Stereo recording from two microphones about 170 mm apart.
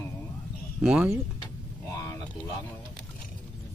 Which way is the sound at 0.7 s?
5° right (ahead or behind).